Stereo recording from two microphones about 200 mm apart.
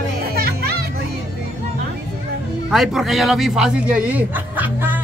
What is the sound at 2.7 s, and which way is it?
Speech, centre (ahead or behind).